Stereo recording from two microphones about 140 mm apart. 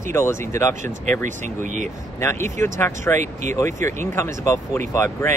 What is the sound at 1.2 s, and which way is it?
Speech, 60° right (ahead or behind).